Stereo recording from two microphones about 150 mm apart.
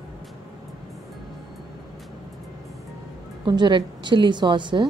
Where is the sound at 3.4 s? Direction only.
30° right (ahead or behind).